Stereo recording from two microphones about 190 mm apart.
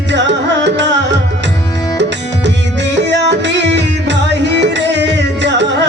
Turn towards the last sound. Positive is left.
turn(degrees=-70)  # may be behind; listen again after turning